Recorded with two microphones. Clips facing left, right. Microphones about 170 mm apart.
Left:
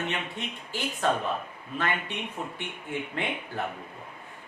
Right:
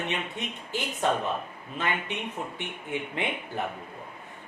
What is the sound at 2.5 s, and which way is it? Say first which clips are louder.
A man's voice: right 1 dB; 20° right (ahead or behind).